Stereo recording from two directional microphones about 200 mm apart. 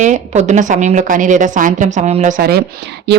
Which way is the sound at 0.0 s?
35° right (ahead or behind).